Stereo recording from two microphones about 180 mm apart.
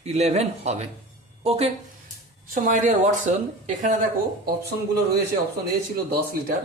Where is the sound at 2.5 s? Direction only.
45° right (ahead or behind).